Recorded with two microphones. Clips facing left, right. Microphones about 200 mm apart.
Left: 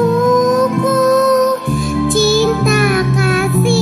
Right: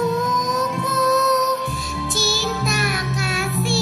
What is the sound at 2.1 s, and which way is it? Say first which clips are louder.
Music: left 12 dB; 55° left (ahead or behind).